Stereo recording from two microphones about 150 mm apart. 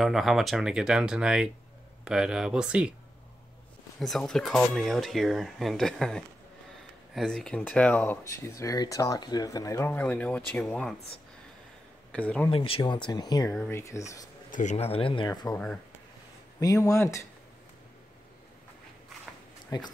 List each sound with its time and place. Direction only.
0.0 s speech: centre (ahead or behind)
4.0 s speech: centre (ahead or behind)
12.1 s speech: 10° left (ahead or behind)
12.4 s speech: 35° left (ahead or behind); by 14.3 s 20° left (ahead or behind)
14.5 s speech: 55° left (ahead or behind); by 15.2 s 35° left (ahead or behind)
15.2 s speech: 25° left (ahead or behind)
15.5 s speech: 5° left (ahead or behind)
16.5 s speech: 20° left (ahead or behind)
19.7 s speech: 25° left (ahead or behind)